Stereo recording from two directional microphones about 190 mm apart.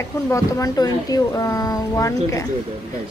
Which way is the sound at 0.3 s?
20° left (ahead or behind).